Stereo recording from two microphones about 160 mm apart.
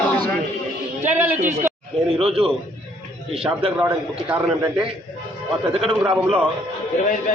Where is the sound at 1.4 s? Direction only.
50° right (ahead or behind).